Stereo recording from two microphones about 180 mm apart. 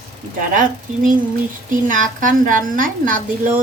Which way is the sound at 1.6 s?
45° right (ahead or behind).